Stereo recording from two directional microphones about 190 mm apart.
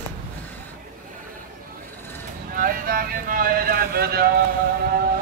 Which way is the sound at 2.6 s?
50° right (ahead or behind).